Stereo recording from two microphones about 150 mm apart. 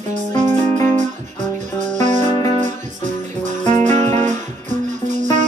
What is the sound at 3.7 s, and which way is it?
Music, 55° right (ahead or behind).